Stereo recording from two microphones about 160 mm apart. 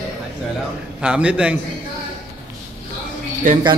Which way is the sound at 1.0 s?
5° right (ahead or behind).